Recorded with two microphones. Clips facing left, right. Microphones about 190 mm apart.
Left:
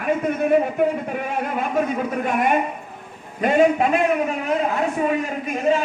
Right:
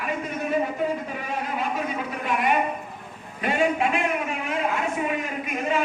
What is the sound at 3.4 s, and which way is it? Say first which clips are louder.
Speech: left 7 dB; 40° left (ahead or behind).